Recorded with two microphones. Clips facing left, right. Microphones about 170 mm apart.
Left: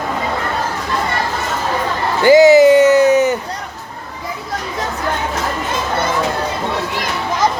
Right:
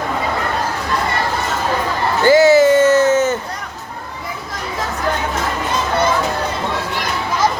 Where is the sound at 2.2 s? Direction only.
15° left (ahead or behind).